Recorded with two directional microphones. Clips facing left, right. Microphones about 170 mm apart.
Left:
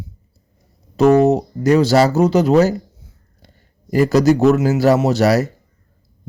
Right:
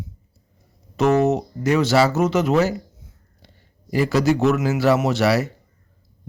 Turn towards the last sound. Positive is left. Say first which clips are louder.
# left 4 dB
turn(degrees=40)  # may be behind; listen again after turning